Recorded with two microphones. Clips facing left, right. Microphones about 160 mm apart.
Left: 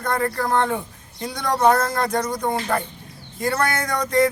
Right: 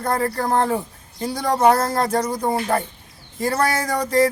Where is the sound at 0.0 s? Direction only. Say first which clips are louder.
Right 1 dB; 30° right (ahead or behind).